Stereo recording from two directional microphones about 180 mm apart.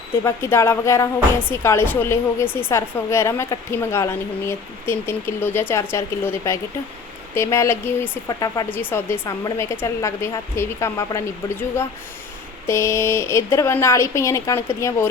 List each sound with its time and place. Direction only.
0.3 s speech: 15° left (ahead or behind)